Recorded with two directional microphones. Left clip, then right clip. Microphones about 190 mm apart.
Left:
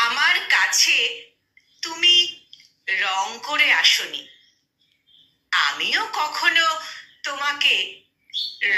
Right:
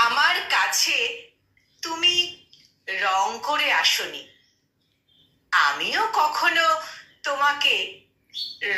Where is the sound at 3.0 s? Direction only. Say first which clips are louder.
Right 6 dB; 5° right (ahead or behind).